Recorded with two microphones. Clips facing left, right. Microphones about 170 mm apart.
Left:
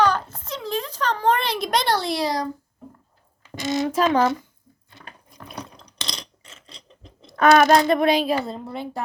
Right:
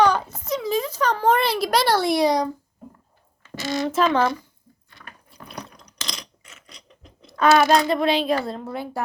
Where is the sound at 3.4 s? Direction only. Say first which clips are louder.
Left 2 dB; 20° left (ahead or behind).